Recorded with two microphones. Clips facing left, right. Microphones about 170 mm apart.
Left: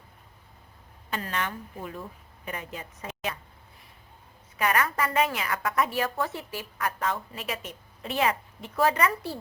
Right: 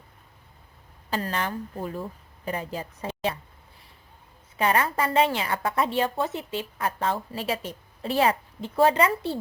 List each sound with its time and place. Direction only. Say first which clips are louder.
1.1 s a woman's voice: right 4 dB; 35° right (ahead or behind)
4.5 s a woman's voice: right 3 dB; 30° right (ahead or behind)